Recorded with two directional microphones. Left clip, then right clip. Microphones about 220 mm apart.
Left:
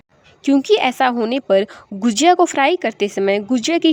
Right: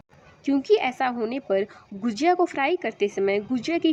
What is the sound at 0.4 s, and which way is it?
A woman's voice, 45° left (ahead or behind).